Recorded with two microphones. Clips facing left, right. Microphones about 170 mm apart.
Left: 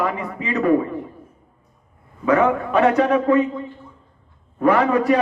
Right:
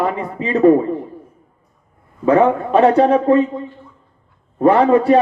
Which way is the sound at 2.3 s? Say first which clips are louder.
Right 4 dB; 30° right (ahead or behind).